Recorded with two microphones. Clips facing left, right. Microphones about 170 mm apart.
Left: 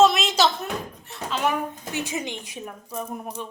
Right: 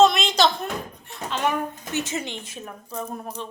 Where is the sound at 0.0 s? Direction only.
5° left (ahead or behind).